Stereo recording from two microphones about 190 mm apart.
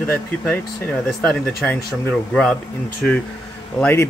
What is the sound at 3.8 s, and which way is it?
Speech, 10° left (ahead or behind).